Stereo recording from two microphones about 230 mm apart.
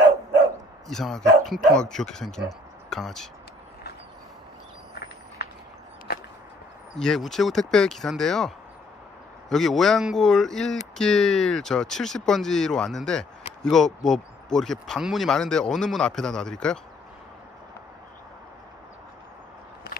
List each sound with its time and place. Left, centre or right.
0.8 s speech: centre
6.1 s whip: left
7.0 s speech: centre